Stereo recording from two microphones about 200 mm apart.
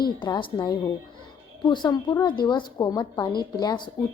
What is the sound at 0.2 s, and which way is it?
A woman's voice, 25° left (ahead or behind).